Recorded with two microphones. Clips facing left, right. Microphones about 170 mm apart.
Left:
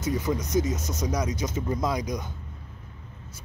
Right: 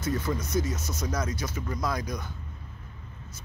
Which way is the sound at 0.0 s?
15° left (ahead or behind).